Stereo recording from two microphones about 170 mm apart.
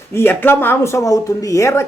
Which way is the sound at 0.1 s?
15° left (ahead or behind).